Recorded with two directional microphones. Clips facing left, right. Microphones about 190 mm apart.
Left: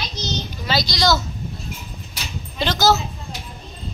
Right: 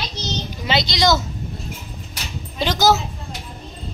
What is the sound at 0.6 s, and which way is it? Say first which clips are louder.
Speech: right 2 dB; 20° right (ahead or behind).